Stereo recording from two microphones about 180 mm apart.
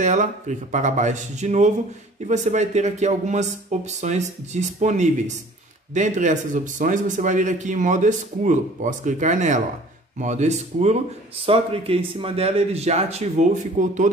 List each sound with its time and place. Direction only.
0.0 s speech: 45° right (ahead or behind)